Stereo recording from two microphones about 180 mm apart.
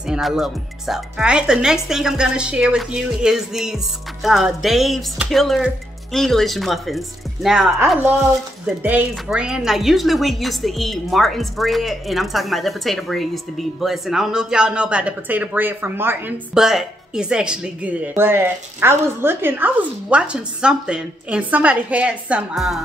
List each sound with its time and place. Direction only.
0.0 s speech: 5° right (ahead or behind)